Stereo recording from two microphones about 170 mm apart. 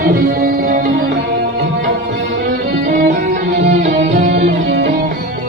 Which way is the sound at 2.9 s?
50° right (ahead or behind).